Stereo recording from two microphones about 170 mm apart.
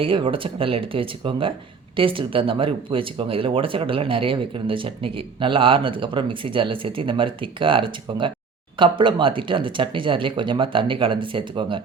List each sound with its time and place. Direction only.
0.0 s speech: 30° right (ahead or behind)